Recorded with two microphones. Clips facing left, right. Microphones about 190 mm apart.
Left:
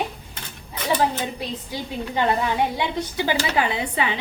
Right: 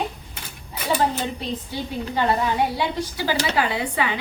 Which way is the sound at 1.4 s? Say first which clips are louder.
Right 1 dB; 15° left (ahead or behind).